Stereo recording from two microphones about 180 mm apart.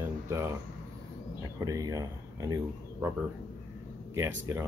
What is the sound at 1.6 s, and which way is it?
Speech, 20° right (ahead or behind).